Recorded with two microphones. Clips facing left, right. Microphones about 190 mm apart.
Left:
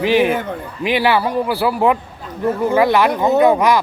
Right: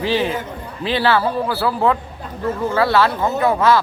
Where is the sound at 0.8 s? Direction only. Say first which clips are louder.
Left 1 dB; 15° left (ahead or behind).